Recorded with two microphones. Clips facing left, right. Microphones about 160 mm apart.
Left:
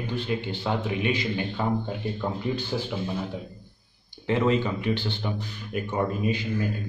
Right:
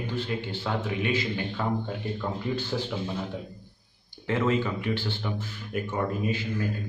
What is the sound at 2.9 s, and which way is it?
Speech, 5° left (ahead or behind).